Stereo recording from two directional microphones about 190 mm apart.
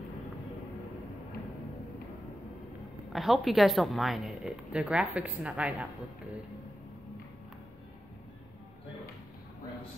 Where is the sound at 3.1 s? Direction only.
Centre (ahead or behind).